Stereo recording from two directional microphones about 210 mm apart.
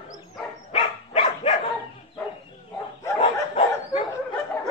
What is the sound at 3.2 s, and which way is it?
Bow-wow, 30° left (ahead or behind).